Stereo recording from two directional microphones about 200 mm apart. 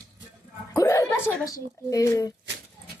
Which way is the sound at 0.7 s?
15° left (ahead or behind).